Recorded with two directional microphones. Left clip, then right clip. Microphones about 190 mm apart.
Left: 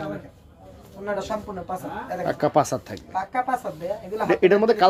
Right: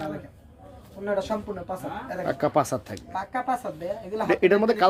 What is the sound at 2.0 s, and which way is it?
Speech, centre (ahead or behind).